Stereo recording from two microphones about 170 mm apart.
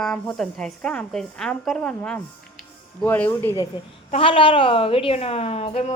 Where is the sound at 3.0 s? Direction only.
10° left (ahead or behind).